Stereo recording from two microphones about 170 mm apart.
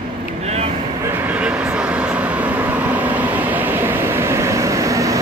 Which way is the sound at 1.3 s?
5° right (ahead or behind).